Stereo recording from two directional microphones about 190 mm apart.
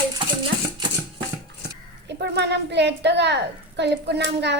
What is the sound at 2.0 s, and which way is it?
A woman's voice, 60° right (ahead or behind).